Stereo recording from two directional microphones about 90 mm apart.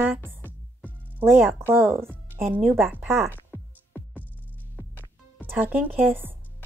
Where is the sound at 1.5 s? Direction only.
25° right (ahead or behind).